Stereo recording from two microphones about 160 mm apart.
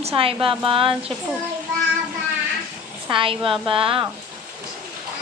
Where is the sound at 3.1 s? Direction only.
35° right (ahead or behind).